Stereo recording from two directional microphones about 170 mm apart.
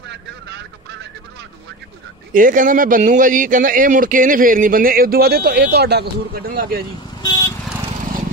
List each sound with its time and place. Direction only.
2.3 s speech: 50° right (ahead or behind)
7.2 s vehicle: 20° left (ahead or behind)